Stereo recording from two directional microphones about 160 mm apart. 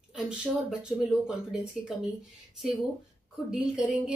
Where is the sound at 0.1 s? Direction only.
5° right (ahead or behind).